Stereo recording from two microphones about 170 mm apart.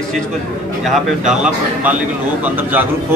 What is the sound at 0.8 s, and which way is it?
A man's voice, centre (ahead or behind).